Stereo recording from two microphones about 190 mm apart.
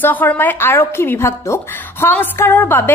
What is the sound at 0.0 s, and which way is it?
A woman's voice, 10° left (ahead or behind).